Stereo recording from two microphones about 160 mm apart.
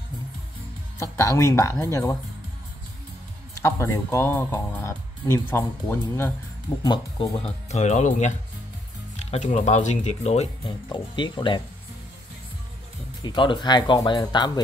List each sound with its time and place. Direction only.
1.1 s speech: 20° left (ahead or behind)
3.6 s speech: 15° left (ahead or behind)
6.8 s speech: 30° left (ahead or behind)
7.3 s speech: 40° left (ahead or behind)
10.9 s speech: 30° left (ahead or behind)
13.2 s speech: 30° left (ahead or behind)